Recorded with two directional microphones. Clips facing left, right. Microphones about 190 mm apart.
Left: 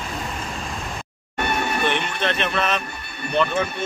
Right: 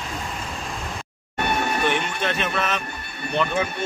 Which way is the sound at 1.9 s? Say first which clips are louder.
Left 1 dB; 10° right (ahead or behind).